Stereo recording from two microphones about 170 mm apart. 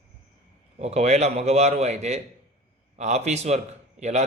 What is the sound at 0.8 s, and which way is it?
A man's voice, 40° right (ahead or behind).